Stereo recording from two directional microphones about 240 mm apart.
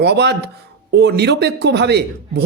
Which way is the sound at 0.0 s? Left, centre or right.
Right.